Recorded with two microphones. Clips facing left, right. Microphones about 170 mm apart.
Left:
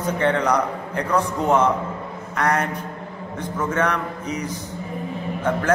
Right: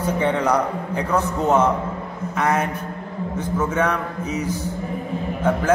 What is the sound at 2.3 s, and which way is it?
A man's voice, 5° right (ahead or behind).